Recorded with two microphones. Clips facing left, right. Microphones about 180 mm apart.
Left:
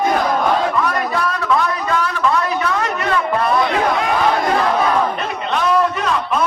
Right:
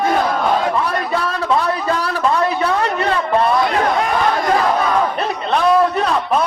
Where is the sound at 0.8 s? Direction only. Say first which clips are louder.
Even; 30° right (ahead or behind).